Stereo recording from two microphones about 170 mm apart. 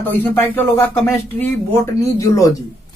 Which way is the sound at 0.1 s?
15° left (ahead or behind).